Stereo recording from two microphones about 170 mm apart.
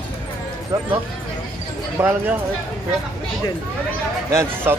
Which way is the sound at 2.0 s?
15° right (ahead or behind).